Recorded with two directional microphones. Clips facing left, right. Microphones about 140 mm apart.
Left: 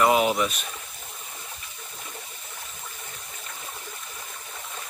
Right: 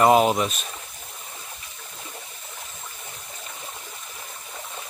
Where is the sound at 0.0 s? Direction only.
35° right (ahead or behind).